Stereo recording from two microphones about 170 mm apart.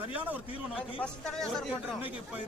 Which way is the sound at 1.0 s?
5° left (ahead or behind).